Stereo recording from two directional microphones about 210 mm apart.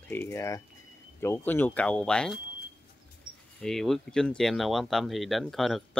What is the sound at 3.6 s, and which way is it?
Speech, centre (ahead or behind).